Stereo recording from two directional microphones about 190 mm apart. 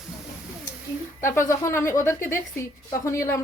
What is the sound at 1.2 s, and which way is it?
A woman's voice, 15° left (ahead or behind).